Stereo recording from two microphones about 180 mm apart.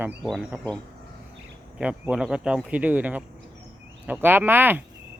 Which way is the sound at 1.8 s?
5° right (ahead or behind).